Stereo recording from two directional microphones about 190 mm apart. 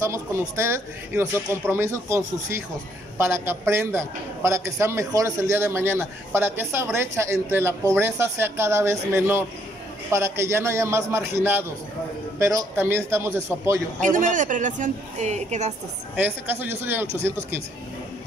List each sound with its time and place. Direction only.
0.0 s a man's voice: 15° right (ahead or behind)
12.4 s a man's voice: 15° right (ahead or behind)
14.0 s a woman's voice: 40° right (ahead or behind)
16.2 s a man's voice: 10° right (ahead or behind)